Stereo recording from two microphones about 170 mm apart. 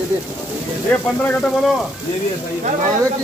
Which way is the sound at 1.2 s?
5° left (ahead or behind).